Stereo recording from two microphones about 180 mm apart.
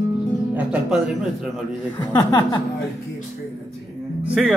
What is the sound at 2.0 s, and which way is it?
Speech, 20° left (ahead or behind).